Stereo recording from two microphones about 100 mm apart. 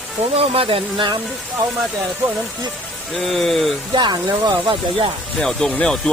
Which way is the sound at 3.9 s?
50° right (ahead or behind).